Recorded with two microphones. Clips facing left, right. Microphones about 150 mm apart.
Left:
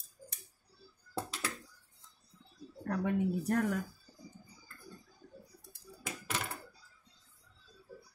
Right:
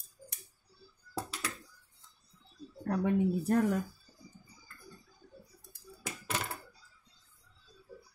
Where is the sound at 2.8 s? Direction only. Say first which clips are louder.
Right 3 dB; 25° right (ahead or behind).